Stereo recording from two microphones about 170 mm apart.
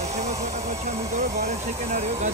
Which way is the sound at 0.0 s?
40° right (ahead or behind).